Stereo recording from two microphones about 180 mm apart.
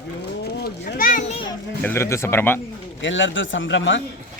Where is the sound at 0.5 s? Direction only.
65° left (ahead or behind); by 1.4 s 45° left (ahead or behind).